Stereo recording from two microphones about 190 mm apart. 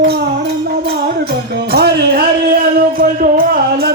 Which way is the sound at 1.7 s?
55° right (ahead or behind).